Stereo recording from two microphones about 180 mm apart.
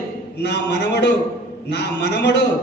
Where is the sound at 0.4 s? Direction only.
70° left (ahead or behind).